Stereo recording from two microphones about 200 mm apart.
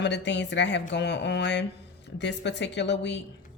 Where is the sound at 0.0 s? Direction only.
60° left (ahead or behind).